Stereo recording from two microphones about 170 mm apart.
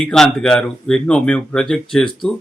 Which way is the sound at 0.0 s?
5° left (ahead or behind).